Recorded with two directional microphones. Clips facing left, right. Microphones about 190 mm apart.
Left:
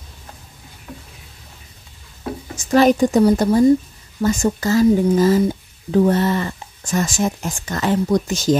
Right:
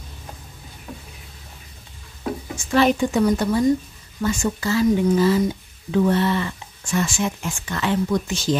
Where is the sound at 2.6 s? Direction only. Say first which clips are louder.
Left 5 dB; 40° left (ahead or behind).